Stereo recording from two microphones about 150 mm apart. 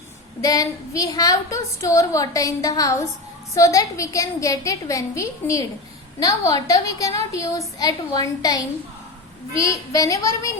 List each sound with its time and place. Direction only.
0.4 s a woman's voice: 25° left (ahead or behind)